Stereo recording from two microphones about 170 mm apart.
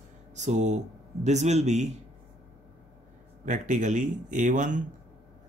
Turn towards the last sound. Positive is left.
turn(degrees=-45)  # may be behind; listen again after turning